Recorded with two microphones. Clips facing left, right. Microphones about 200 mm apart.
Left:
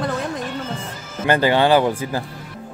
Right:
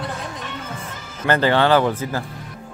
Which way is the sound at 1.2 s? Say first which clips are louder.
Left 1 dB; 15° left (ahead or behind).